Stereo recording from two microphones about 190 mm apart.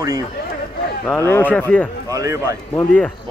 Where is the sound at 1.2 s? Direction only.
10° left (ahead or behind).